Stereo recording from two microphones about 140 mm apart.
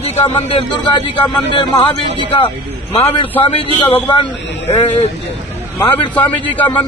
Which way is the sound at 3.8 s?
35° left (ahead or behind).